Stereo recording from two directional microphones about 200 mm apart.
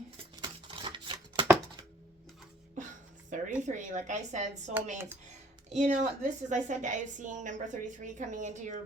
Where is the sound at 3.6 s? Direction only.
35° right (ahead or behind).